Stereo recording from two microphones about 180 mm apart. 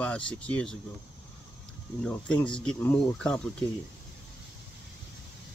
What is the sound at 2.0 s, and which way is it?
Speech, 5° left (ahead or behind).